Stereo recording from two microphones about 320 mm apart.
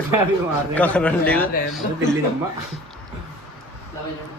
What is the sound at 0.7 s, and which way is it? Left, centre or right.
Speech, centre.